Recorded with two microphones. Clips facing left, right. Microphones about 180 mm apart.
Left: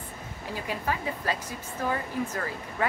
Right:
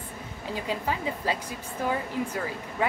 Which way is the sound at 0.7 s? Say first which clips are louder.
Right 1 dB; 15° right (ahead or behind).